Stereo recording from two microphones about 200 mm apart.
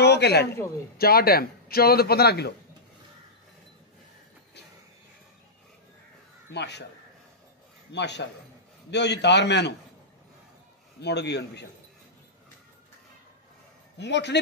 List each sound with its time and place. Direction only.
0.0 s a sound: 55° left (ahead or behind)
0.9 s a man's voice: 50° left (ahead or behind)
6.5 s a man's voice: 60° left (ahead or behind)
7.9 s a man's voice: 60° left (ahead or behind)
11.0 s a man's voice: 60° left (ahead or behind)
13.9 s a man's voice: 60° left (ahead or behind)